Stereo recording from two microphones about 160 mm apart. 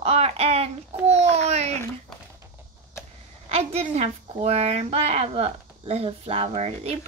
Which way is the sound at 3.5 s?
40° right (ahead or behind).